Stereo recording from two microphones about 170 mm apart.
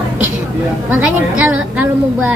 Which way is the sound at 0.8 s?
10° right (ahead or behind).